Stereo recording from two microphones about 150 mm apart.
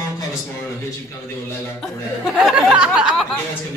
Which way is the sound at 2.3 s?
5° right (ahead or behind).